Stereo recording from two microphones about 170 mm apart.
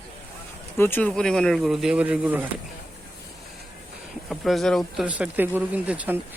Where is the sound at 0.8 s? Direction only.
10° left (ahead or behind); by 2.4 s 5° right (ahead or behind).